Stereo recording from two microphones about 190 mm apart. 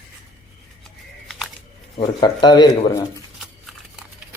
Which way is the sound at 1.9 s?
25° left (ahead or behind).